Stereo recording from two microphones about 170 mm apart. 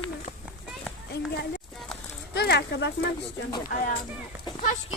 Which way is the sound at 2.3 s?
75° left (ahead or behind).